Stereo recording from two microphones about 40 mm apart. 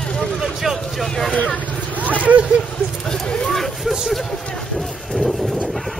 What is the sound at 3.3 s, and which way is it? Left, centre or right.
Hubbub, centre.